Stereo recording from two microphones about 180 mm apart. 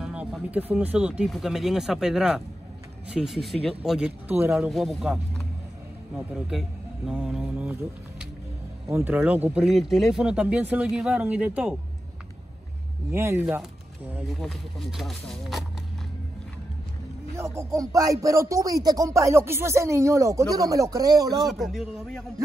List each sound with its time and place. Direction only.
0.0 s speech: 5° right (ahead or behind)
8.8 s speech: 10° right (ahead or behind)
13.1 s speech: 15° right (ahead or behind)
13.4 s speech: 5° right (ahead or behind)
17.4 s speech: 15° right (ahead or behind)
21.4 s speech: centre (ahead or behind)